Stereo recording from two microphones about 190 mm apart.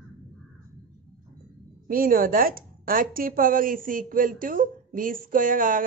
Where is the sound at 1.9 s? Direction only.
50° right (ahead or behind).